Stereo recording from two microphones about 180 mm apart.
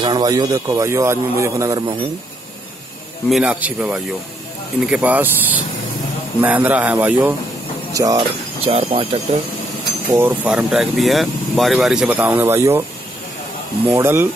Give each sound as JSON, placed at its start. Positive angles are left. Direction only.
{"t": 0.0, "sound": "a man's voice", "side_deg": -25}
{"t": 3.3, "sound": "speech", "side_deg": -5}
{"t": 7.9, "sound": "a man's voice", "side_deg": -20}
{"t": 8.6, "sound": "speech", "side_deg": -30}
{"t": 10.1, "sound": "speech", "side_deg": -10}
{"t": 13.9, "sound": "speech", "side_deg": -15}